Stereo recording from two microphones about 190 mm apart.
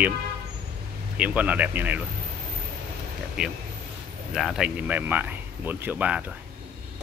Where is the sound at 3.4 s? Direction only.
5° right (ahead or behind).